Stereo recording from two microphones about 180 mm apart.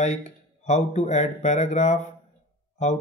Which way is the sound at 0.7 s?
40° left (ahead or behind).